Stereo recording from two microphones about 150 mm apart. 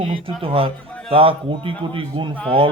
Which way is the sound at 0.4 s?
35° right (ahead or behind).